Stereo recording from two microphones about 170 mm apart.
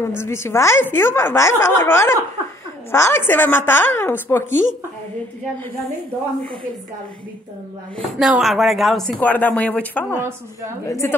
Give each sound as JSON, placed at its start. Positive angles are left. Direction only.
{"t": 0.0, "sound": "a woman's voice", "side_deg": 15}
{"t": 8.0, "sound": "a woman's voice", "side_deg": 0}